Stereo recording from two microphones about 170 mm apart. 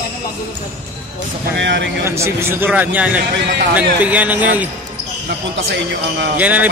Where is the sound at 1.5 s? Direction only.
90° right.